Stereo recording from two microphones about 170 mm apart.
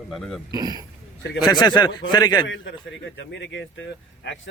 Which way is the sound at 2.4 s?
90° left.